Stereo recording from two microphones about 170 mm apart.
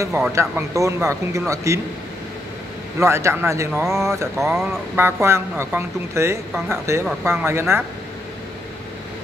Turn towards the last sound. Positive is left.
turn(degrees=-15)  # may be behind; listen again after turning